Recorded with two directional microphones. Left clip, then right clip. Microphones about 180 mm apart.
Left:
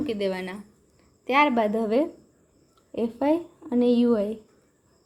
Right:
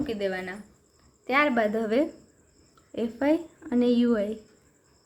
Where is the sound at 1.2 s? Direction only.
15° left (ahead or behind).